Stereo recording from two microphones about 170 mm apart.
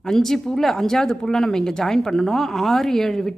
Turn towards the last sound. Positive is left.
turn(degrees=0)  # may be behind; listen again after turning